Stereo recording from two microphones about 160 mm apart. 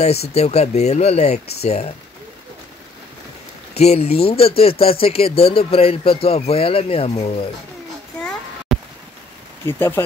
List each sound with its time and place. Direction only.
0.3 s speech: 40° left (ahead or behind)
3.7 s speech: 40° left (ahead or behind)
8.2 s a sound: 5° left (ahead or behind)
9.7 s speech: 15° left (ahead or behind)